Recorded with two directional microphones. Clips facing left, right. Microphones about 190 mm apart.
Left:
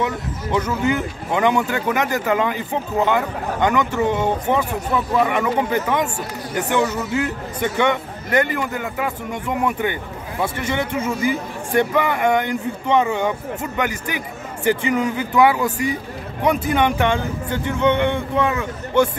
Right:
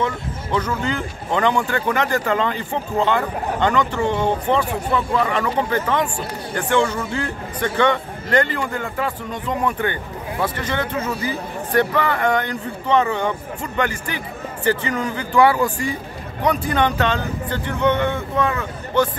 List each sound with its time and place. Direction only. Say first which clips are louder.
0.6 s speech: left 3 dB; 10° left (ahead or behind)
16.6 s speech: left 1 dB; 10° left (ahead or behind)